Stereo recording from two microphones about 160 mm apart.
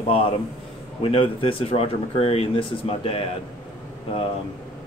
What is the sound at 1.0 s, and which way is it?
Speech, 35° left (ahead or behind).